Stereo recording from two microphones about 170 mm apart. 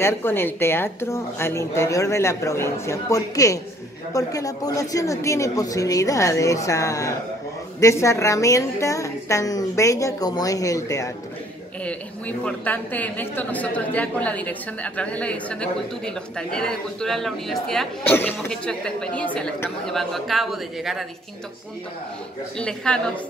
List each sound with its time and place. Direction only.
0.0 s a woman's voice: 15° left (ahead or behind)
11.8 s a woman's voice: 10° left (ahead or behind)
22.6 s a woman's voice: 5° left (ahead or behind)